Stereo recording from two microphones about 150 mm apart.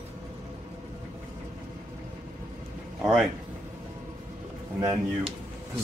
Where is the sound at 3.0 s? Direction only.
Centre (ahead or behind).